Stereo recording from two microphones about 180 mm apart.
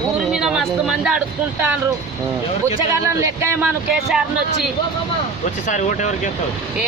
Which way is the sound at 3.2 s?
15° right (ahead or behind).